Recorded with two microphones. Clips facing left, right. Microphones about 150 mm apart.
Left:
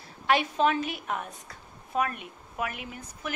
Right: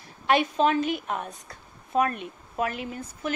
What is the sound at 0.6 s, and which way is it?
Speech, 25° right (ahead or behind).